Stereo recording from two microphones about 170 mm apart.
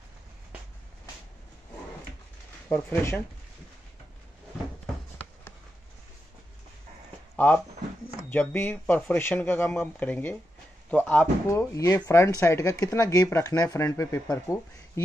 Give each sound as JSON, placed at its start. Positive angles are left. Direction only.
{"t": 2.7, "sound": "speech", "side_deg": 15}
{"t": 7.3, "sound": "speech", "side_deg": 10}